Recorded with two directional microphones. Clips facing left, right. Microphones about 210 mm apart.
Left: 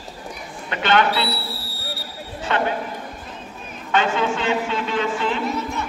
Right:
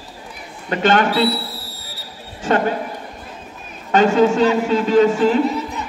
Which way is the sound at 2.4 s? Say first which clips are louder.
Right 5 dB; 45° right (ahead or behind).